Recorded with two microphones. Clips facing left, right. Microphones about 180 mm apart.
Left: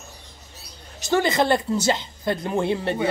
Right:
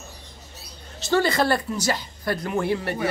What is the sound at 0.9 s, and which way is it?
Speech, 15° left (ahead or behind).